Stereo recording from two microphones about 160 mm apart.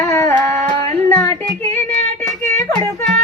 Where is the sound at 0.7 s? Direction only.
45° right (ahead or behind).